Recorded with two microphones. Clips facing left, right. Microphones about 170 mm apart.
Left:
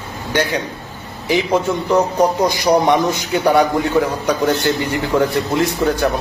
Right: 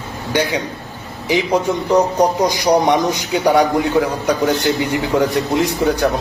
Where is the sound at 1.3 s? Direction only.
15° right (ahead or behind).